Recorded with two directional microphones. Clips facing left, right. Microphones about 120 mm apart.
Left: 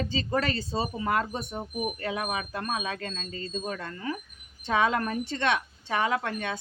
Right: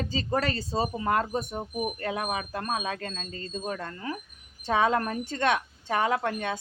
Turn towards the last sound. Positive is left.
turn(degrees=-40)  # may be behind; listen again after turning